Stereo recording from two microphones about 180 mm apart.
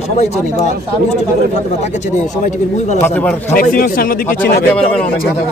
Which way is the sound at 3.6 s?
55° left (ahead or behind).